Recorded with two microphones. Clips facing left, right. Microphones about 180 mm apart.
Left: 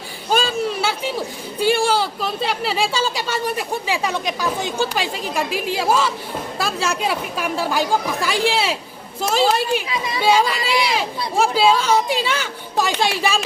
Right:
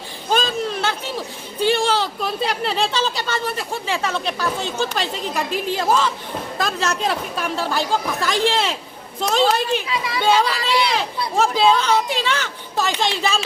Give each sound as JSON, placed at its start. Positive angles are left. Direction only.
{"t": 0.3, "sound": "a sound", "side_deg": 10}
{"t": 1.6, "sound": "speech", "side_deg": 10}
{"t": 9.9, "sound": "speech", "side_deg": 20}
{"t": 10.2, "sound": "speech", "side_deg": 10}